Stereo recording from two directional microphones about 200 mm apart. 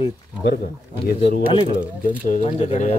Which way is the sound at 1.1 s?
55° left (ahead or behind).